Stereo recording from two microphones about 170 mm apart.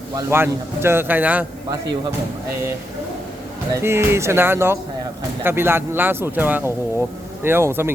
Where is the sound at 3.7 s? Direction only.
15° right (ahead or behind).